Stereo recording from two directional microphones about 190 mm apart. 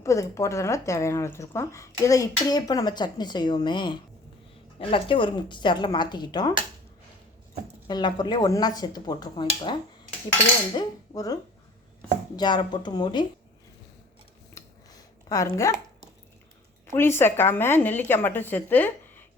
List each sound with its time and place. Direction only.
0.0 s a woman's voice: 15° left (ahead or behind)
7.9 s a woman's voice: 20° left (ahead or behind)
10.8 s a woman's voice: 20° left (ahead or behind)
12.4 s a woman's voice: 20° left (ahead or behind)
14.5 s a sound: 20° left (ahead or behind)
16.8 s speech: 10° left (ahead or behind)